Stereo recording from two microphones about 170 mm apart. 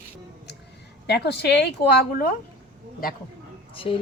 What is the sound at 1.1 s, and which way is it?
Speech, 75° left (ahead or behind).